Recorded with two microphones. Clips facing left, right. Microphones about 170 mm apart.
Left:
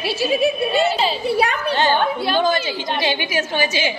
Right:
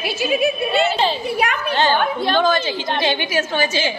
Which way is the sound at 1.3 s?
30° left (ahead or behind).